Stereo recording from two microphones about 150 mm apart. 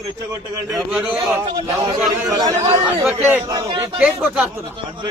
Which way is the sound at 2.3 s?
25° right (ahead or behind).